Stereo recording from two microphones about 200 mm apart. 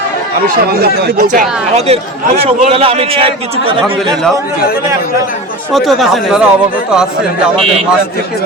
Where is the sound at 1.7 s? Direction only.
30° right (ahead or behind).